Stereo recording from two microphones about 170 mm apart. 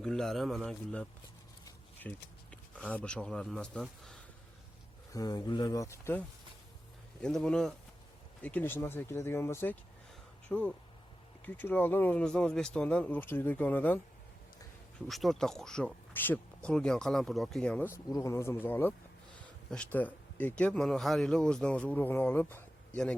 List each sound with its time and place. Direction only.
0.0 s speech: 5° left (ahead or behind)
5.1 s speech: 20° left (ahead or behind)
7.2 s speech: 5° left (ahead or behind)